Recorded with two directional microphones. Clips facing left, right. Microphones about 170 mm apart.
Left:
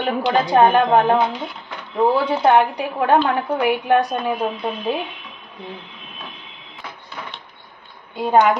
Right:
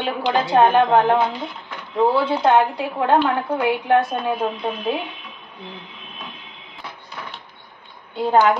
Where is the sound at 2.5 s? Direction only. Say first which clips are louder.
Left 2 dB; 15° left (ahead or behind).